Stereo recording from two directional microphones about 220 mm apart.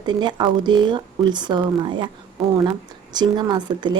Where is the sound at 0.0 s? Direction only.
20° right (ahead or behind).